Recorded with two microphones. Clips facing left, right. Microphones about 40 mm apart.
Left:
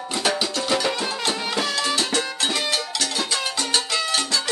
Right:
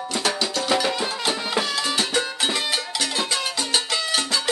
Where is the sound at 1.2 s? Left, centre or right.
Centre.